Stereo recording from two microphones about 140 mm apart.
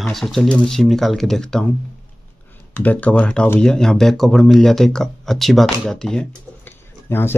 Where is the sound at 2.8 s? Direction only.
10° left (ahead or behind).